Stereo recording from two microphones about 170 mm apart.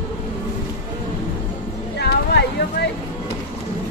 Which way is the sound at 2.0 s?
75° left (ahead or behind).